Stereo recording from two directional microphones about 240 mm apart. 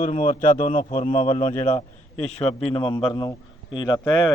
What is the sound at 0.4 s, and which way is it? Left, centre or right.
A man's voice, left.